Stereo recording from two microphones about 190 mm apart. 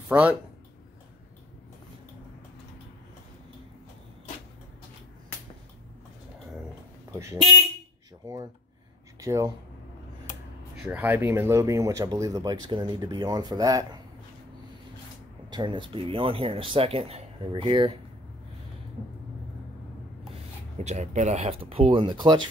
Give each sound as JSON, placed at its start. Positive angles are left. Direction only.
{"t": 0.1, "sound": "speech", "side_deg": -10}
{"t": 7.1, "sound": "speech", "side_deg": -15}
{"t": 9.2, "sound": "speech", "side_deg": -15}
{"t": 10.9, "sound": "speech", "side_deg": -10}
{"t": 15.5, "sound": "speech", "side_deg": -25}
{"t": 20.2, "sound": "speech", "side_deg": -35}